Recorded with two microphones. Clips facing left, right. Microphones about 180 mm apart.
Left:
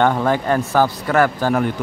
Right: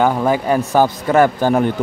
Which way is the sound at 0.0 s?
10° right (ahead or behind).